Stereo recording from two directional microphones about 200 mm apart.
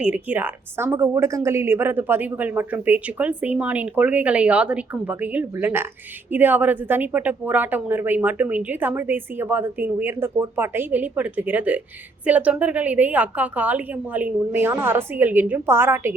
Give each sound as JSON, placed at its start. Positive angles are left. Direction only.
{"t": 0.0, "sound": "a woman's voice", "side_deg": -5}